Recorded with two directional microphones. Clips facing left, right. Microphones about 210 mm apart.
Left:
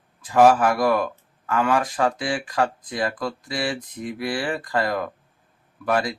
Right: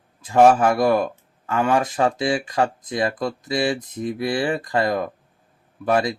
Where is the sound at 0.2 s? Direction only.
25° right (ahead or behind).